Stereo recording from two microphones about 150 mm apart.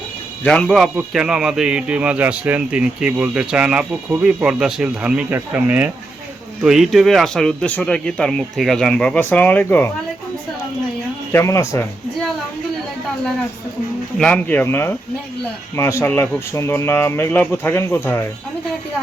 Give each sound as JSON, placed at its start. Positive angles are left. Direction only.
{"t": 0.4, "sound": "speech", "side_deg": 5}
{"t": 11.3, "sound": "speech", "side_deg": 15}
{"t": 14.2, "sound": "speech", "side_deg": 5}